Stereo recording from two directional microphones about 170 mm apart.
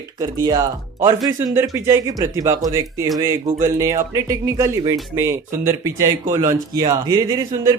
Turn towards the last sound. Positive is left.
turn(degrees=-25)  # may be behind; listen again after turning